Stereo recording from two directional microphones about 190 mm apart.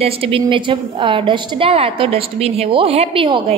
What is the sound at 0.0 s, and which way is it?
A woman's voice, 30° right (ahead or behind).